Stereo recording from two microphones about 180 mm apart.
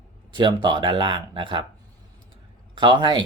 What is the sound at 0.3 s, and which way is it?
Speech, 25° right (ahead or behind).